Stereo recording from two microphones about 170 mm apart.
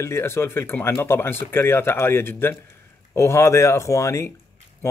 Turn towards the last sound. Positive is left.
turn(degrees=15)  # may be behind; listen again after turning